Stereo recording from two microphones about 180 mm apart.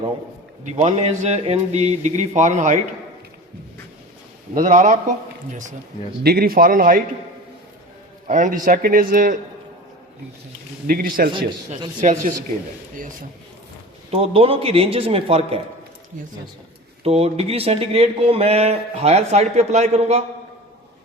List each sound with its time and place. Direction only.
0.6 s speech: 40° right (ahead or behind)
4.5 s a man's voice: 45° right (ahead or behind)
6.2 s a man's voice: 55° right (ahead or behind)
8.3 s a man's voice: 45° right (ahead or behind)
10.8 s a man's voice: 55° right (ahead or behind)
11.3 s speech: 30° right (ahead or behind)
11.9 s a man's voice: 45° right (ahead or behind)
14.1 s speech: 35° right (ahead or behind)
17.0 s speech: 35° right (ahead or behind)